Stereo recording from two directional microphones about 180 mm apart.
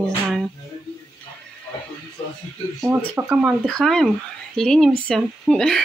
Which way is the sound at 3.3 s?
Centre (ahead or behind).